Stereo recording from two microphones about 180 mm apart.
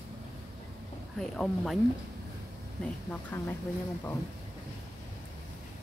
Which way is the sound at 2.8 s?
10° left (ahead or behind).